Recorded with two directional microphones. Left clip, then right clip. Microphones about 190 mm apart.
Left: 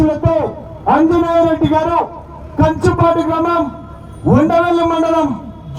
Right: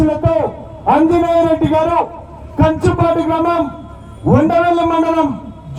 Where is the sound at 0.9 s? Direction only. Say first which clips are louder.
Even; 10° left (ahead or behind).